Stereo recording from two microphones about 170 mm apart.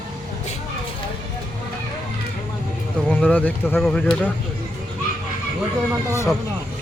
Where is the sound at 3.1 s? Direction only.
5° left (ahead or behind).